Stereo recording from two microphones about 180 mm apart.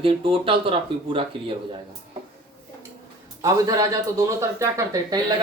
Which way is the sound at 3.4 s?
20° right (ahead or behind).